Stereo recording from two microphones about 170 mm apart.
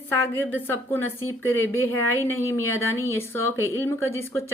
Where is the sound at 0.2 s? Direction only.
15° left (ahead or behind).